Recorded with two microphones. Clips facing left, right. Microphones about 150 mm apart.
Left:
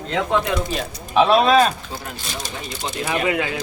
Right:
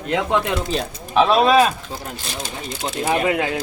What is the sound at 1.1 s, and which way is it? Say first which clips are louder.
Speech: even; centre (ahead or behind).